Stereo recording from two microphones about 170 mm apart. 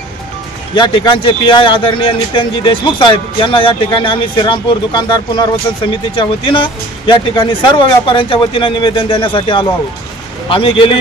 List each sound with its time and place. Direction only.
0.7 s a man's voice: 25° left (ahead or behind)